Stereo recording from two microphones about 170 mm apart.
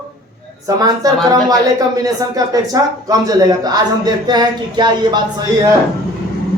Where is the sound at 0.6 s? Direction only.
20° right (ahead or behind).